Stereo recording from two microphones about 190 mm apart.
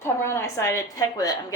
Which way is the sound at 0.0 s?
15° left (ahead or behind).